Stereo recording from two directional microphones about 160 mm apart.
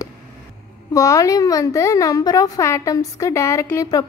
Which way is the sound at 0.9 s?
20° left (ahead or behind).